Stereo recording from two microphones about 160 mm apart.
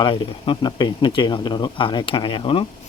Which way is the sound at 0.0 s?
35° left (ahead or behind).